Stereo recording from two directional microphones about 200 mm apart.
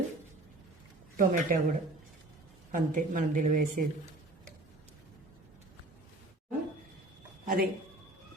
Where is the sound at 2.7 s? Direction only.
45° right (ahead or behind).